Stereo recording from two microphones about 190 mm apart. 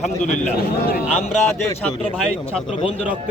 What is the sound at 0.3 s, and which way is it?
Speech, 45° left (ahead or behind).